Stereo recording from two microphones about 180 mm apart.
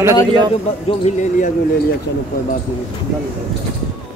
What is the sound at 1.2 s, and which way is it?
Speech, 45° left (ahead or behind).